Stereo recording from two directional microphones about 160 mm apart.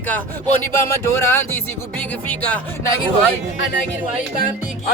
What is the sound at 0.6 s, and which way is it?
Speech, 15° left (ahead or behind).